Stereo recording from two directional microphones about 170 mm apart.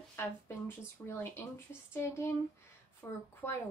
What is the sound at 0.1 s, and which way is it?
Speech, 15° left (ahead or behind).